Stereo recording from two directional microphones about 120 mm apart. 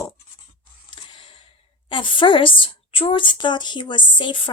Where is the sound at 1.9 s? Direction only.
45° left (ahead or behind).